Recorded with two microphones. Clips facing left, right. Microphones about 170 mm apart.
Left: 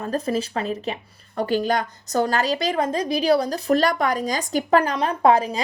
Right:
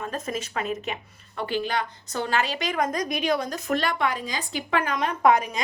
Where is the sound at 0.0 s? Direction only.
35° left (ahead or behind).